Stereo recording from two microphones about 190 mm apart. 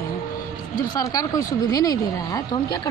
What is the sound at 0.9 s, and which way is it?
Speech, 20° left (ahead or behind).